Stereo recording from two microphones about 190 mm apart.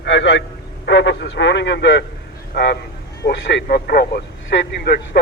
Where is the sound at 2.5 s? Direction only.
60° left (ahead or behind).